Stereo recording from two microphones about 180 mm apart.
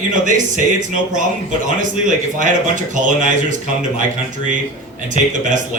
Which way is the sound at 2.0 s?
45° right (ahead or behind).